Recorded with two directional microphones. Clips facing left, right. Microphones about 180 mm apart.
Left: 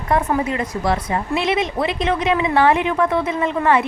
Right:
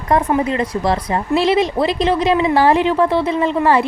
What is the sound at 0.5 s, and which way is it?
Speech, 35° right (ahead or behind).